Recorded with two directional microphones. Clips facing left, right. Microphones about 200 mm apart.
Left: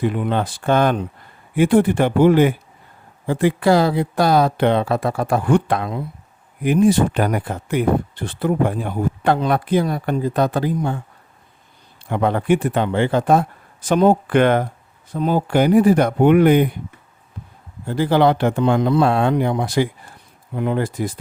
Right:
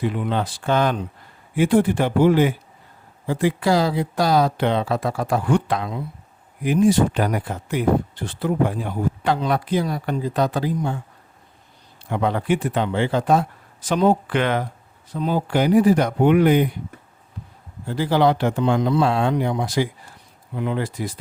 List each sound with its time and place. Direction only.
0.0 s speech: 55° left (ahead or behind)
12.0 s speech: 55° left (ahead or behind)
17.8 s speech: 55° left (ahead or behind)